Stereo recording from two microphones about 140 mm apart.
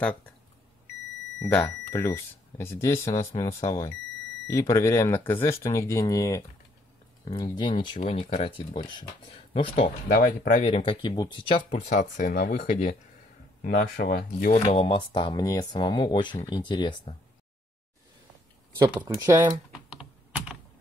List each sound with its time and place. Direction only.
1.4 s speech: 10° left (ahead or behind); by 8.0 s 35° left (ahead or behind)
8.0 s speech: 50° left (ahead or behind)
9.5 s speech: 50° left (ahead or behind)
10.1 s speech: 80° left
10.7 s speech: 40° left (ahead or behind)
11.8 s speech: 60° left (ahead or behind); by 12.7 s 90° left
13.6 s speech: 75° left (ahead or behind)
14.7 s speech: 45° left (ahead or behind)
19.0 s speech: 25° right (ahead or behind)
19.9 s computer keyboard: 5° right (ahead or behind)